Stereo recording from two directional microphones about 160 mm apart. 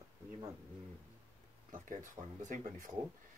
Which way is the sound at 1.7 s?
50° right (ahead or behind).